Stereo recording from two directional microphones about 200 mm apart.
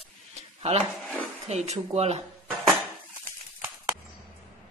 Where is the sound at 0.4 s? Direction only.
30° right (ahead or behind).